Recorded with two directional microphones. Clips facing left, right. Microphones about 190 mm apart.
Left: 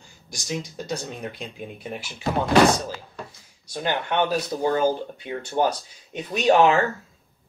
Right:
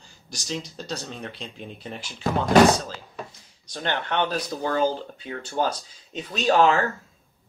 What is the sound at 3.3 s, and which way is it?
Speech, 10° left (ahead or behind).